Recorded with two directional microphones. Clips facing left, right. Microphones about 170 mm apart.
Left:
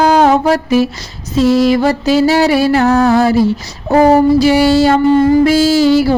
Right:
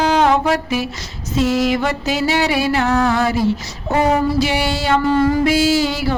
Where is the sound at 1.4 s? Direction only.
35° left (ahead or behind).